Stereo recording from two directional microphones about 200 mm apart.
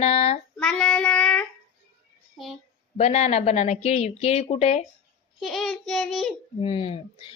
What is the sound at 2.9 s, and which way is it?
A woman's voice, 35° left (ahead or behind).